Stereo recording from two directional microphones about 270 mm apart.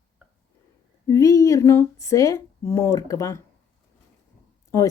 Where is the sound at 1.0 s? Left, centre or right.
Centre.